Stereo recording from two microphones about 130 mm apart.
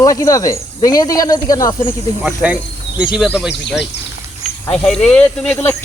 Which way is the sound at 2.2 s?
10° right (ahead or behind).